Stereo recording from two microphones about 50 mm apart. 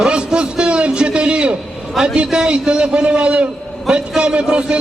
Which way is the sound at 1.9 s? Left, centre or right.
Centre.